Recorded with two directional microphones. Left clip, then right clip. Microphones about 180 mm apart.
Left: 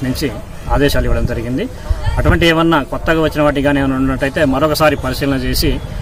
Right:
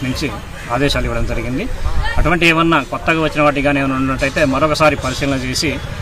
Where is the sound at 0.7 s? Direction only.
20° left (ahead or behind).